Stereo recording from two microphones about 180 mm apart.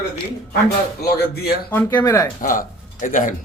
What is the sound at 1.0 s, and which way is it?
Speech, 60° left (ahead or behind).